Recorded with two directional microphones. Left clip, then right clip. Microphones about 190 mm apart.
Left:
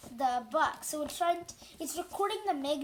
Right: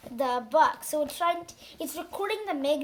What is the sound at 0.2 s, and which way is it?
Speech, 30° right (ahead or behind).